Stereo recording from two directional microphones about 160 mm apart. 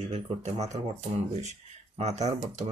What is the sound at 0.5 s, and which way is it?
Speech, 20° right (ahead or behind).